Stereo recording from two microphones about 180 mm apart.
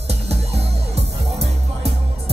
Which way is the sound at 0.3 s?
35° right (ahead or behind).